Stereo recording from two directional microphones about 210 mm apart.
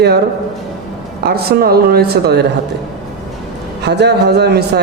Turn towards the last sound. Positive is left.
turn(degrees=-50)  # may be behind; listen again after turning